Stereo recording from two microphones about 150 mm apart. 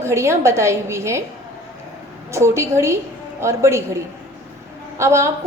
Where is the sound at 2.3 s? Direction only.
20° right (ahead or behind).